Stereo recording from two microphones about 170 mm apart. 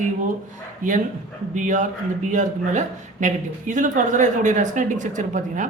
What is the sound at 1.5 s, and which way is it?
Speech, 50° right (ahead or behind).